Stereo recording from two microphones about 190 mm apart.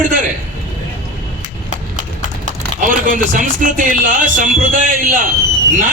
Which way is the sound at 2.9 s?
45° right (ahead or behind).